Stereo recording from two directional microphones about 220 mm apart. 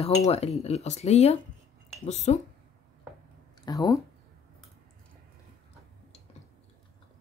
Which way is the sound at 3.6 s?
15° left (ahead or behind).